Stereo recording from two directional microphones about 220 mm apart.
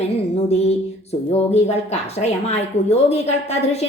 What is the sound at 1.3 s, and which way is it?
Speech, 30° left (ahead or behind).